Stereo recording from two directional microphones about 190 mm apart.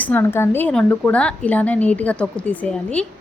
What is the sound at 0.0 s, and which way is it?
A woman's voice, 10° left (ahead or behind).